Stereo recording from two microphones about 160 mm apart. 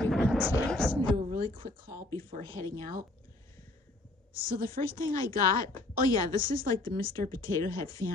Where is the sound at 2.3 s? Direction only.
50° right (ahead or behind).